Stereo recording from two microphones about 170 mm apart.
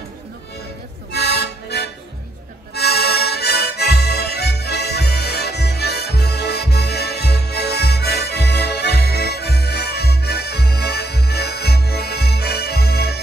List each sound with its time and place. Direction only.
1.1 s music: 80° left